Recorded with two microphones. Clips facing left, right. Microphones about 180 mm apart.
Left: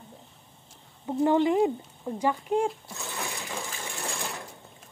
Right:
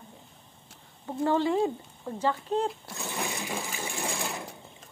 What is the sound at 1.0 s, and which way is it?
Speech, 15° left (ahead or behind).